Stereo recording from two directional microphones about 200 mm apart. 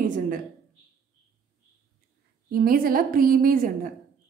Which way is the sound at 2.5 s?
45° right (ahead or behind).